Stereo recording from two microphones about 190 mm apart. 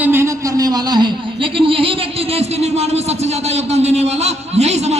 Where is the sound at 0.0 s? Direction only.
10° right (ahead or behind).